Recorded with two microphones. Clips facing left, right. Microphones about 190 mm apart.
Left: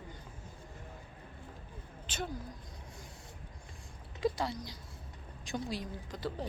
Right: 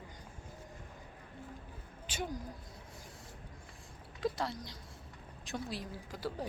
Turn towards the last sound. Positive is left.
turn(degrees=-10)  # may be behind; listen again after turning